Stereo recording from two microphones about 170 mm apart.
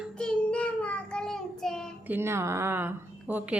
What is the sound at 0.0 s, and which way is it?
Child singing, 5° left (ahead or behind).